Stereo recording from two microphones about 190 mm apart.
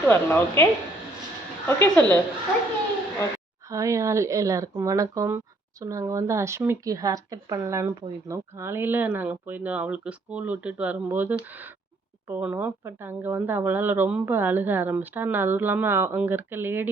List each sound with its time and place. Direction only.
0.1 s speech: 10° left (ahead or behind)
3.7 s speech: 15° right (ahead or behind)